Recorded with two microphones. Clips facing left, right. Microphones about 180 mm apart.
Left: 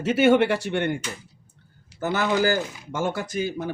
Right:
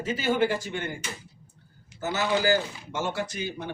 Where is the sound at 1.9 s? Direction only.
55° left (ahead or behind).